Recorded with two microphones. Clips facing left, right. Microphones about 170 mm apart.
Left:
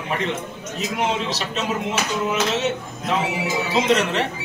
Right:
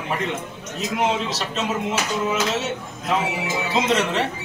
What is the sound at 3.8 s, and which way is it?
Speech, centre (ahead or behind).